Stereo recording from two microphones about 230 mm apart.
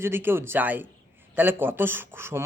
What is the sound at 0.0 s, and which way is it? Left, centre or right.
Speech, centre.